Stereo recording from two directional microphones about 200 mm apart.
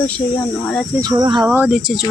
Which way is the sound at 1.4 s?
5° right (ahead or behind).